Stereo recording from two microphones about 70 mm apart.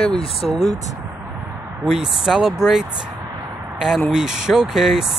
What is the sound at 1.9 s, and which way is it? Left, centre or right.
Speech, centre.